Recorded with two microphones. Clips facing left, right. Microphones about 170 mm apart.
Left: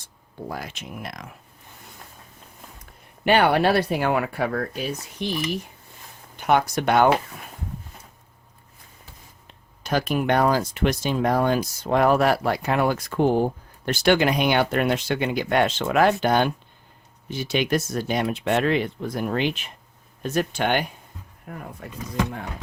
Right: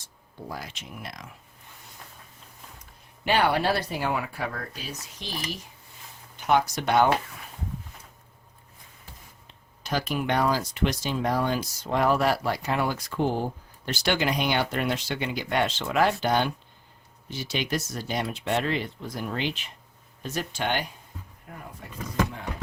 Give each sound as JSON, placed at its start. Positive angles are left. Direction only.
{"t": 0.4, "sound": "speech", "side_deg": 55}
{"t": 3.2, "sound": "speech", "side_deg": 60}
{"t": 6.3, "sound": "speech", "side_deg": 60}
{"t": 9.8, "sound": "speech", "side_deg": 50}